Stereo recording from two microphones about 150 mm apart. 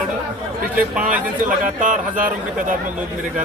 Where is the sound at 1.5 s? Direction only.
60° right (ahead or behind).